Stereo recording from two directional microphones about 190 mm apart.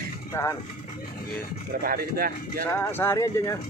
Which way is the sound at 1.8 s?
50° right (ahead or behind).